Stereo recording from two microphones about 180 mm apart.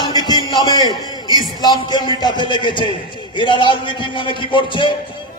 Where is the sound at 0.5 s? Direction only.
20° left (ahead or behind).